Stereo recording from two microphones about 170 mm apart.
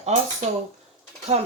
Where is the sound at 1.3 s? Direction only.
35° right (ahead or behind).